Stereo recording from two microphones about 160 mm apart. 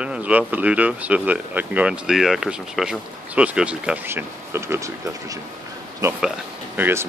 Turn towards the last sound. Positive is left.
turn(degrees=-10)  # may be behind; listen again after turning